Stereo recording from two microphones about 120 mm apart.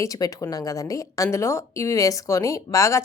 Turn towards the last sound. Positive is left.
turn(degrees=25)  # may be behind; listen again after turning